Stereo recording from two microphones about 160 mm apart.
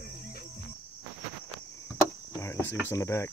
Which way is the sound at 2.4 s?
15° left (ahead or behind).